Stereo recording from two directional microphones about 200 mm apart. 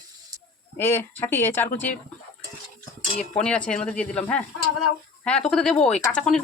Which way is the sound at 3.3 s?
5° left (ahead or behind).